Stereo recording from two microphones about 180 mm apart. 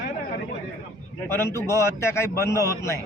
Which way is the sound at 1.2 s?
15° left (ahead or behind).